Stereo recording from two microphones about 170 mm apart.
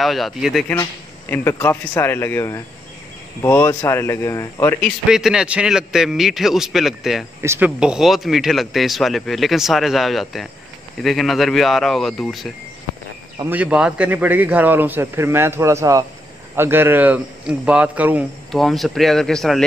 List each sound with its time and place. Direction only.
0.0 s speech: centre (ahead or behind)
1.3 s speech: 15° left (ahead or behind)
4.8 s speech: centre (ahead or behind)
13.5 s speech: 5° right (ahead or behind)